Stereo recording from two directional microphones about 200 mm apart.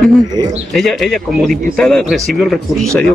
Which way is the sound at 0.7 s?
Centre (ahead or behind).